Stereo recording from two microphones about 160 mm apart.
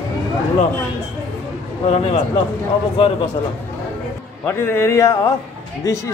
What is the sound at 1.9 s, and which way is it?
Speech, 40° left (ahead or behind).